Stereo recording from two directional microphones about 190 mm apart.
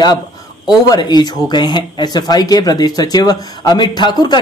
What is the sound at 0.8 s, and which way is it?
Speech, 20° left (ahead or behind).